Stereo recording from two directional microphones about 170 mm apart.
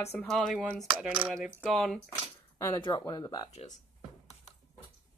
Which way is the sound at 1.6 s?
Centre (ahead or behind).